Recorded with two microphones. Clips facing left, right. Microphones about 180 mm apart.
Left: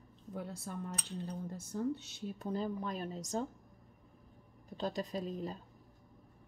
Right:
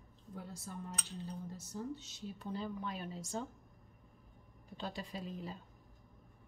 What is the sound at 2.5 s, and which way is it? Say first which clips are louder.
Speech: left 4 dB; 40° left (ahead or behind).